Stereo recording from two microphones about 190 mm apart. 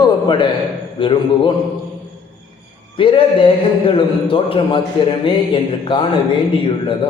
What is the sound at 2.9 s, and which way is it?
A man's voice, 25° left (ahead or behind).